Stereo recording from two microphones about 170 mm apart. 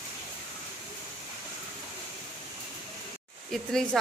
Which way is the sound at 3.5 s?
Centre (ahead or behind).